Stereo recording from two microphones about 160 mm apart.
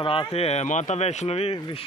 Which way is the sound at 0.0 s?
35° left (ahead or behind).